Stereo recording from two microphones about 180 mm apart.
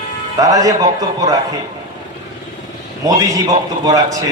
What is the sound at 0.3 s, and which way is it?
A man's voice, 20° right (ahead or behind).